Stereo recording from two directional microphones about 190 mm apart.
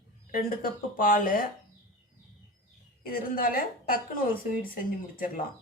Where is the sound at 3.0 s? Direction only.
50° left (ahead or behind).